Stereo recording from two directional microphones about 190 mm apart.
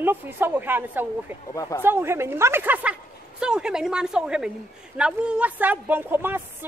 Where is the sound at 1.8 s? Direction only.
10° right (ahead or behind).